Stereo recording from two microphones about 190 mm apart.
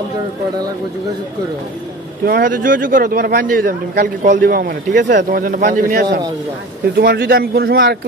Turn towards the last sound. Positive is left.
turn(degrees=-55)  # may be behind; listen again after turning